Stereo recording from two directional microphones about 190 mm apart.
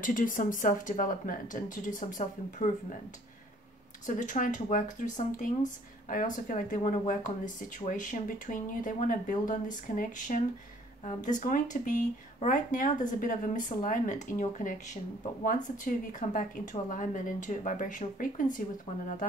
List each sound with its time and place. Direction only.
0.0 s speech: 45° left (ahead or behind)
4.0 s speech: 40° left (ahead or behind)